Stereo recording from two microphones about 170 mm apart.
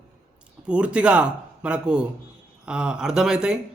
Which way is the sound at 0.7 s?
5° right (ahead or behind).